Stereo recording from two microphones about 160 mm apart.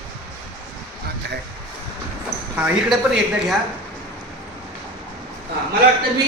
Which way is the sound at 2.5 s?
5° right (ahead or behind).